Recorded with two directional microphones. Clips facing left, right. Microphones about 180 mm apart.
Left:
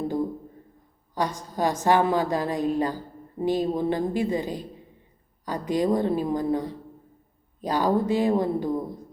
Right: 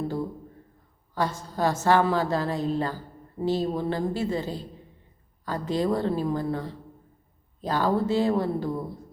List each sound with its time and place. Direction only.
1.1 s a woman's voice: 15° left (ahead or behind)